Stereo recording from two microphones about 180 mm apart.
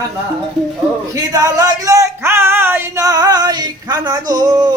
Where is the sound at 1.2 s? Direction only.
20° right (ahead or behind).